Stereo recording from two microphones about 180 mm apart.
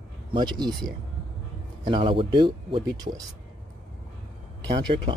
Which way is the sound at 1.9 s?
25° right (ahead or behind).